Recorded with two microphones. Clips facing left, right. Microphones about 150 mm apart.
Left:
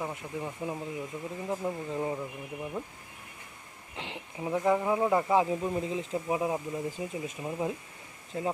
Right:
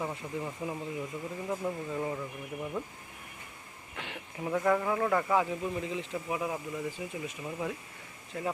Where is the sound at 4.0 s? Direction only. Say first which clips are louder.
Left 1 dB; 25° left (ahead or behind).